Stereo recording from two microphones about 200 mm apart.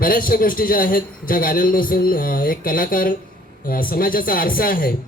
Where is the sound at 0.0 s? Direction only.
45° left (ahead or behind).